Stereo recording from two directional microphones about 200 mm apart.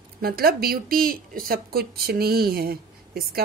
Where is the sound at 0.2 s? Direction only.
50° right (ahead or behind).